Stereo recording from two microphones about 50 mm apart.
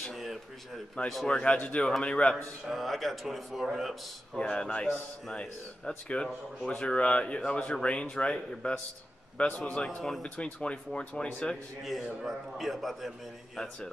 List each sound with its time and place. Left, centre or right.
0.0 s a sound: centre
1.0 s a man's voice: centre
1.3 s speech: left
2.7 s a man's voice: centre
4.4 s speech: left
4.8 s a man's voice: centre
5.4 s speech: centre
9.8 s a man's voice: centre
11.8 s a man's voice: centre